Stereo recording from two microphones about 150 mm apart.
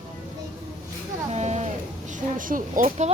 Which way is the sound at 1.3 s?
50° right (ahead or behind).